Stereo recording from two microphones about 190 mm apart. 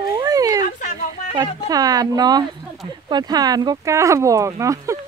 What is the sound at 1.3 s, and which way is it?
Speech, 20° right (ahead or behind).